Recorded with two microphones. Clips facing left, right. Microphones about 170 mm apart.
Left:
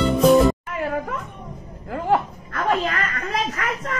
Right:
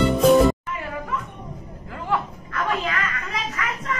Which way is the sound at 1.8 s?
50° left (ahead or behind).